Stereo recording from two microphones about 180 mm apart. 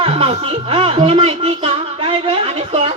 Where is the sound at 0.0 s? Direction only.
35° right (ahead or behind).